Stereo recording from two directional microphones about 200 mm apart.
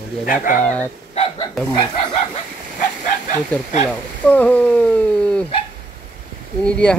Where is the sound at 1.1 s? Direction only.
20° left (ahead or behind).